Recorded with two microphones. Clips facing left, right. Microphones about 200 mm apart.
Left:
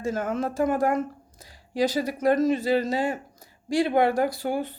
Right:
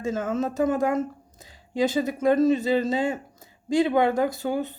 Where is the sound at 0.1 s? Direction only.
25° right (ahead or behind).